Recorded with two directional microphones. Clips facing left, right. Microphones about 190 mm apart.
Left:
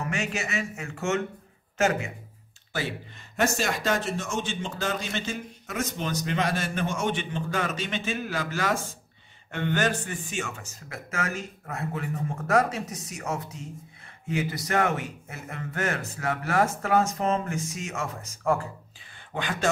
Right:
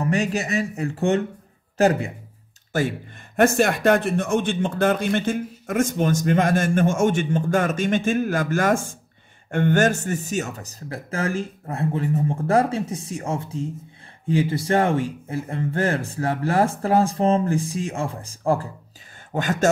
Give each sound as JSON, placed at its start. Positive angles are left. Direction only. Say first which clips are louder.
{"t": 0.0, "sound": "speech", "louder": "right 8 dB", "side_deg": -35}
{"t": 2.7, "sound": "speech", "louder": "right 8 dB", "side_deg": -45}
{"t": 19.3, "sound": "speech", "louder": "right 7 dB", "side_deg": -45}